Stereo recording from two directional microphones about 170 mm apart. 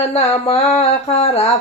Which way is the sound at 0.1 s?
35° left (ahead or behind).